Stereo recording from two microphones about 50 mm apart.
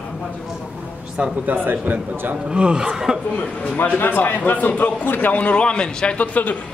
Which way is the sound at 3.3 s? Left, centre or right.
Left.